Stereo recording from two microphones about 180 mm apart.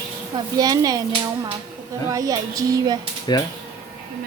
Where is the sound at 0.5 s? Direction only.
20° right (ahead or behind).